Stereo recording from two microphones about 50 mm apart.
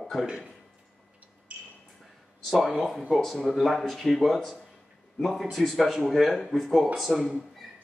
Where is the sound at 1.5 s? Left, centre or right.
Right.